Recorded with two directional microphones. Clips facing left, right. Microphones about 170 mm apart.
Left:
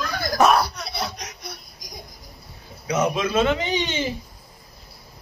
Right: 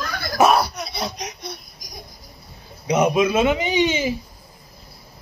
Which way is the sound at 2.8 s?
15° right (ahead or behind).